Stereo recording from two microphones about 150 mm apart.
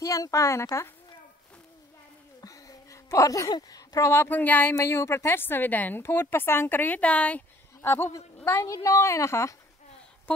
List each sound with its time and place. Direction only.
0.0 s a woman's voice: 20° left (ahead or behind)
2.4 s a woman's voice: 20° left (ahead or behind)